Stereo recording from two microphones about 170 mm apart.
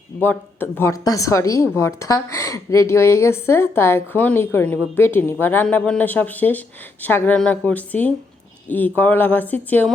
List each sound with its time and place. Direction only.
0.2 s a woman's voice: 10° left (ahead or behind)